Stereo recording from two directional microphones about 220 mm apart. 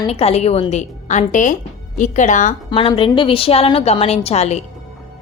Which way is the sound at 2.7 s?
25° left (ahead or behind).